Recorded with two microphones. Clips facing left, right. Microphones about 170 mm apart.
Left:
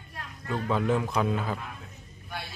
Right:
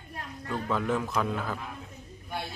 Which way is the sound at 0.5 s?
10° left (ahead or behind).